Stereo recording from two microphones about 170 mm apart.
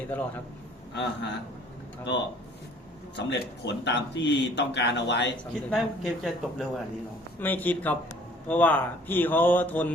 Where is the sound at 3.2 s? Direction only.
90° left.